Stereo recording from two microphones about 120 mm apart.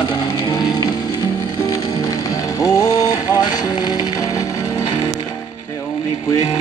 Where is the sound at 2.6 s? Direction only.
30° left (ahead or behind).